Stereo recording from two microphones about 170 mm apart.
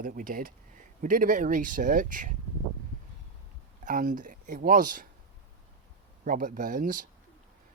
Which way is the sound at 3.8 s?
50° right (ahead or behind).